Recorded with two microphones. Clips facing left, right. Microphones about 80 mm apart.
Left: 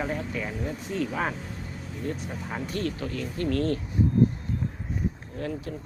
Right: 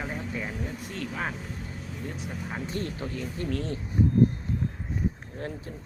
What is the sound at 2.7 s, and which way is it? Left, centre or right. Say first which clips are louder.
Speech: left 4 dB; right.